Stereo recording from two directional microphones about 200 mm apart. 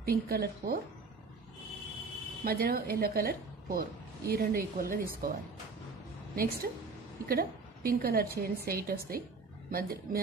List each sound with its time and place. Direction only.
0.0 s a woman's voice: 50° right (ahead or behind)
2.4 s a woman's voice: 45° right (ahead or behind)
6.3 s a woman's voice: 45° right (ahead or behind)